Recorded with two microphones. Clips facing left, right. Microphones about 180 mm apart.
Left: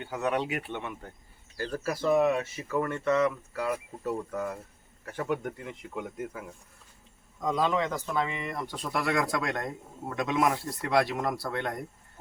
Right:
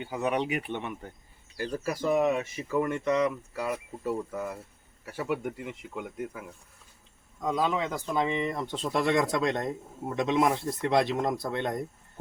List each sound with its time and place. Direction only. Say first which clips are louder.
0.0 s speech: right 1 dB; 15° right (ahead or behind)